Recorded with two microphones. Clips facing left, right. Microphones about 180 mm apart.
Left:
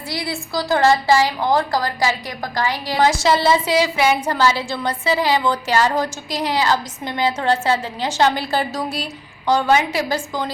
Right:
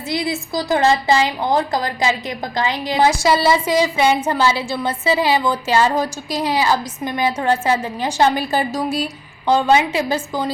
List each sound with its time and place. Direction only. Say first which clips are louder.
0.1 s a woman's voice: right 3 dB; 20° right (ahead or behind)